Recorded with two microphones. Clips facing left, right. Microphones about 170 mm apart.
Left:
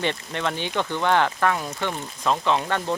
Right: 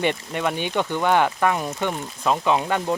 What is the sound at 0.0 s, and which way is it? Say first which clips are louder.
Speech: right 3 dB; 10° right (ahead or behind).